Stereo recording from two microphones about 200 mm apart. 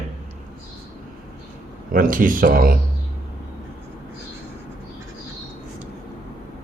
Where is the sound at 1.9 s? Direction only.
45° right (ahead or behind).